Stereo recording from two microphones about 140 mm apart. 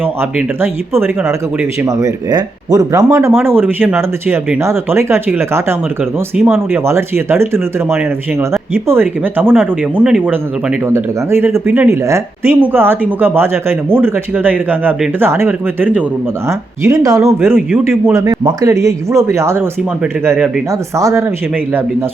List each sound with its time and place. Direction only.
0.0 s speech: 15° right (ahead or behind)
6.3 s speech: 5° right (ahead or behind)
6.7 s speech: 15° right (ahead or behind)
10.8 s speech: 20° right (ahead or behind)
16.5 s speech: 25° right (ahead or behind)
20.7 s speech: 20° right (ahead or behind)